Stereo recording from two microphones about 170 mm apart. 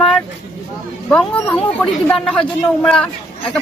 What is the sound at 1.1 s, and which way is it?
Speech, 5° left (ahead or behind).